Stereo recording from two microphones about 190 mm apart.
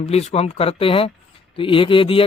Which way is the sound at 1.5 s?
25° left (ahead or behind).